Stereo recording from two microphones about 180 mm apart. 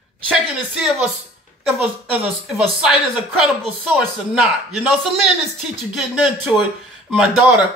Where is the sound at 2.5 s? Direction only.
Centre (ahead or behind).